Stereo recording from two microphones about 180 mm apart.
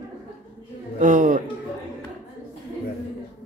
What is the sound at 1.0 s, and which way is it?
Speech, 45° right (ahead or behind).